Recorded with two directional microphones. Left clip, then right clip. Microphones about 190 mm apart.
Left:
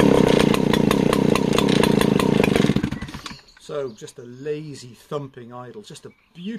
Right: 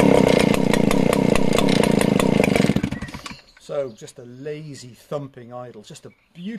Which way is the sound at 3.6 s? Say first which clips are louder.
Right 2 dB; 15° right (ahead or behind).